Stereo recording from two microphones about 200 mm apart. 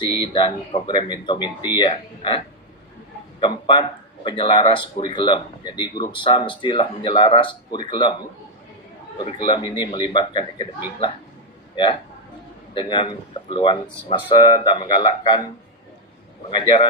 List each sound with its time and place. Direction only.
0.0 s speech: 25° left (ahead or behind)
3.4 s speech: 25° left (ahead or behind)
9.2 s speech: 25° left (ahead or behind)
12.7 s speech: 25° left (ahead or behind)
16.5 s speech: 25° left (ahead or behind)